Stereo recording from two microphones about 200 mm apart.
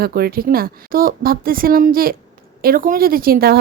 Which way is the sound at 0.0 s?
50° right (ahead or behind).